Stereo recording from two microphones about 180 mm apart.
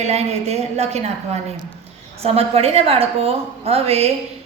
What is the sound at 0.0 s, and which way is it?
A woman's voice, 35° right (ahead or behind).